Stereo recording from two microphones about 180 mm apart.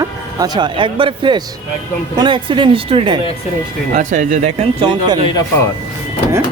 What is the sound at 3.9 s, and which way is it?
Speech, 45° right (ahead or behind).